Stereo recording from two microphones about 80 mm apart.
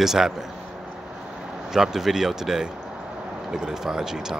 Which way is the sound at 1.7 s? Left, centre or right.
Centre.